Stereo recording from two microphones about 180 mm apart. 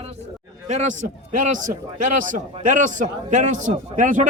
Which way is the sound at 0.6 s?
40° right (ahead or behind).